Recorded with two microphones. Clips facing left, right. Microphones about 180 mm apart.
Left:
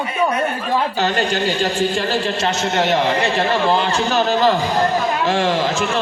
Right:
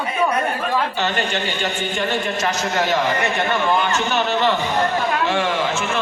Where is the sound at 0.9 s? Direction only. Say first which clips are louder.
Left 3 dB; 35° left (ahead or behind).